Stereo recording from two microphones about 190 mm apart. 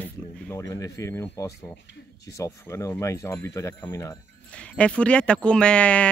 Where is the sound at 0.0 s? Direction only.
10° left (ahead or behind).